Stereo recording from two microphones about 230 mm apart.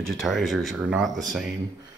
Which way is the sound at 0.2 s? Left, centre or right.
Centre.